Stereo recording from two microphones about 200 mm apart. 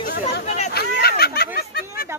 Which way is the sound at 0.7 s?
50° left (ahead or behind).